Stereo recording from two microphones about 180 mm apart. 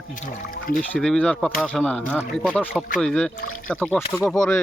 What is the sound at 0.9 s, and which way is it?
Speech, 5° left (ahead or behind).